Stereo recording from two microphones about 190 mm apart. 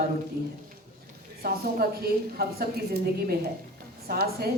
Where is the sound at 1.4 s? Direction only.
55° right (ahead or behind).